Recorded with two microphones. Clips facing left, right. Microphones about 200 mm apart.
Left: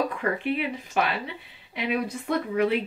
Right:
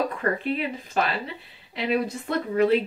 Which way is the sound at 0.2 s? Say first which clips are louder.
Right 1 dB; 10° left (ahead or behind).